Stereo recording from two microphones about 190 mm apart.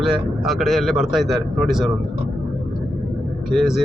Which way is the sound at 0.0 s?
Centre (ahead or behind).